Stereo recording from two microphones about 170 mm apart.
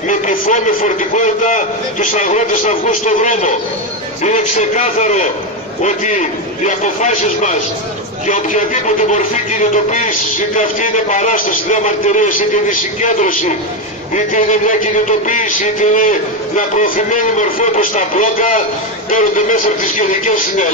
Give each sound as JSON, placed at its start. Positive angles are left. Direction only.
{"t": 0.1, "sound": "speech", "side_deg": 50}